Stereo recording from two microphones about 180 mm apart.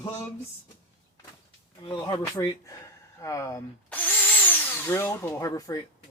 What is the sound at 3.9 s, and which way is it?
Drill, 10° left (ahead or behind).